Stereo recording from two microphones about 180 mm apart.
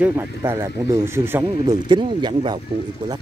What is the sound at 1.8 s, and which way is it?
Speech, 25° right (ahead or behind).